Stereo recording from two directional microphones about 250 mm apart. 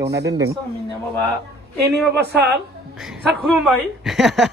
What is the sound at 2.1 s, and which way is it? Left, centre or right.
Speech, right.